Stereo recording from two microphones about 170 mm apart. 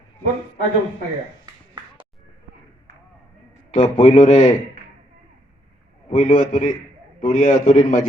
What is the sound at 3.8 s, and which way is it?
Speech, 30° left (ahead or behind).